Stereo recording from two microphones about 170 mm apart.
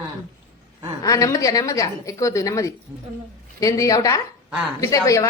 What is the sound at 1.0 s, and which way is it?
A woman's voice, 20° left (ahead or behind).